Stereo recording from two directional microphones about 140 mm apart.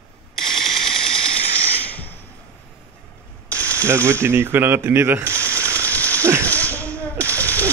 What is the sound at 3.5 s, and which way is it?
Mechanisms, 10° left (ahead or behind).